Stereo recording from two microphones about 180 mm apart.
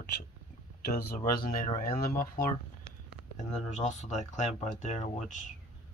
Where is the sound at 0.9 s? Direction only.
45° left (ahead or behind).